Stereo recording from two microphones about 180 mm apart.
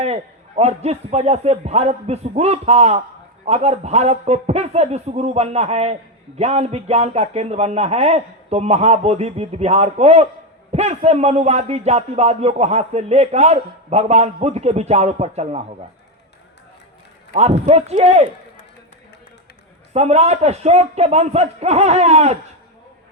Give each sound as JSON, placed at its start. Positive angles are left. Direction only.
{"t": 0.0, "sound": "a man's voice", "side_deg": -35}
{"t": 17.3, "sound": "a man's voice", "side_deg": -35}
{"t": 19.9, "sound": "a man's voice", "side_deg": -35}